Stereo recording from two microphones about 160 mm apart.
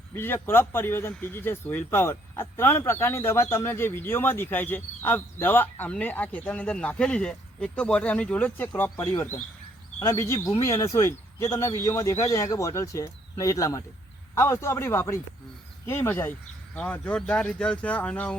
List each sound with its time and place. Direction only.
0.1 s speech: 15° left (ahead or behind)